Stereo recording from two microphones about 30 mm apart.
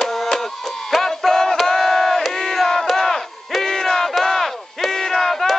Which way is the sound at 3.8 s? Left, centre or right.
Left.